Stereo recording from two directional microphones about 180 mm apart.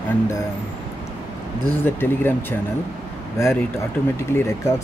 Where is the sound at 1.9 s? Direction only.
10° left (ahead or behind).